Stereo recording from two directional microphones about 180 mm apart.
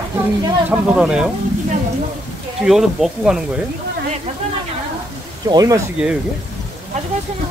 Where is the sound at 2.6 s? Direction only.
Centre (ahead or behind).